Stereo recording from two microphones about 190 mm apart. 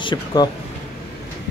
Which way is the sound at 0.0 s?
25° left (ahead or behind).